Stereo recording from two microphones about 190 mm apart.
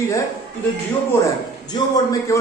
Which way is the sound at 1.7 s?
20° left (ahead or behind).